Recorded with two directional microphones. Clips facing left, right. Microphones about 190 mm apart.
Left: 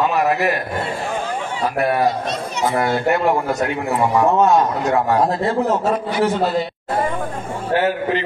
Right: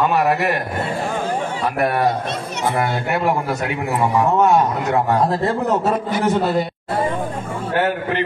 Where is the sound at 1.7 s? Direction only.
60° right (ahead or behind).